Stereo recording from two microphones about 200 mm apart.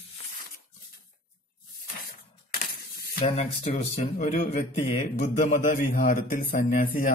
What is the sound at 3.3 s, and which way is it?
Speech, 35° left (ahead or behind).